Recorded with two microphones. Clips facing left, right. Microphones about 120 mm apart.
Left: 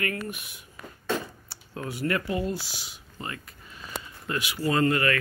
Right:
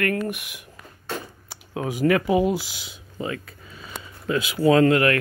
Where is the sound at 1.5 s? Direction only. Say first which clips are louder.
Right 8 dB; 90° right.